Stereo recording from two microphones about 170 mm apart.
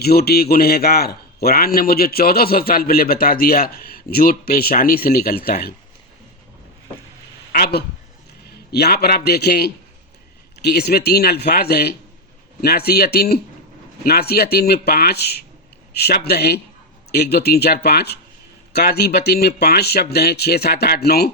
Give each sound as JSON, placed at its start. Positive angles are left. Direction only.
{"t": 0.0, "sound": "a man's voice", "side_deg": 65}
{"t": 7.5, "sound": "a man's voice", "side_deg": 65}